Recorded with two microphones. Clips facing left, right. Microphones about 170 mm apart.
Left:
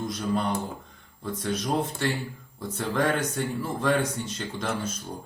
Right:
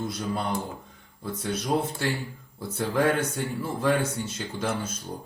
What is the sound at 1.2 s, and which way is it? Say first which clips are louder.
Speech: left 1 dB; 10° right (ahead or behind).